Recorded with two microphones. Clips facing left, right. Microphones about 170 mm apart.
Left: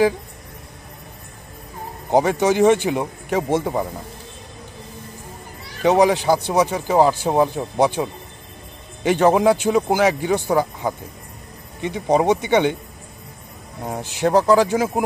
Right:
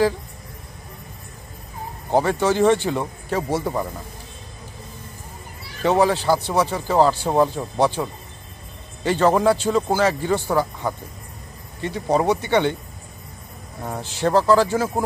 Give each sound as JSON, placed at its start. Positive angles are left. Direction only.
{"t": 2.0, "sound": "speech", "side_deg": 15}
{"t": 5.8, "sound": "speech", "side_deg": 15}
{"t": 13.8, "sound": "speech", "side_deg": 15}